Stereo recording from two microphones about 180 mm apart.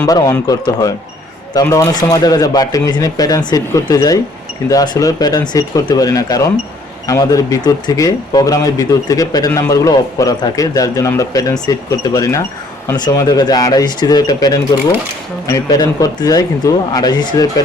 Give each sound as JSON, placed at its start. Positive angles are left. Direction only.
{"t": 0.0, "sound": "speech", "side_deg": 20}